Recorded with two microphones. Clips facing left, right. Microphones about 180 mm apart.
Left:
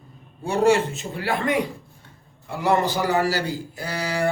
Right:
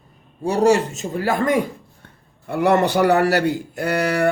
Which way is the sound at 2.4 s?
60° right (ahead or behind).